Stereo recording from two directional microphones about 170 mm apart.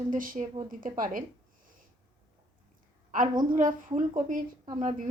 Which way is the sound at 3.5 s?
50° right (ahead or behind).